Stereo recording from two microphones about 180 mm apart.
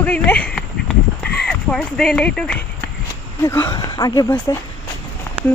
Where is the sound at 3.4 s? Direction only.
15° left (ahead or behind).